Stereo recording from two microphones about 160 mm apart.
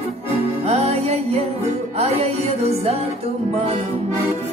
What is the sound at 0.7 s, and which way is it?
Music, 40° right (ahead or behind).